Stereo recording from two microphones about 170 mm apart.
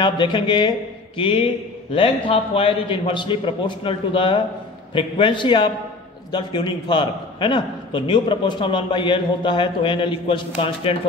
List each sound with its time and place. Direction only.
0.0 s a man's voice: 25° left (ahead or behind)